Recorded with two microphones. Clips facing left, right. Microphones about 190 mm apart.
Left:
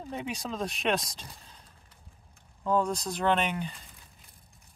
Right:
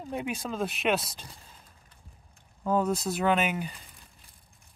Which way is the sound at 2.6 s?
5° right (ahead or behind).